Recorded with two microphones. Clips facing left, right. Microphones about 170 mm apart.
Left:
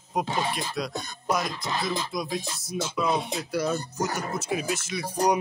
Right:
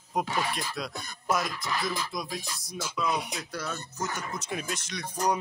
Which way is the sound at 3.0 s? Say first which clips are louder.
Left 2 dB; 25° left (ahead or behind).